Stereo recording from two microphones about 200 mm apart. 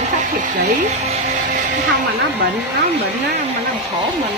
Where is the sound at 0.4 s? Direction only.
40° right (ahead or behind).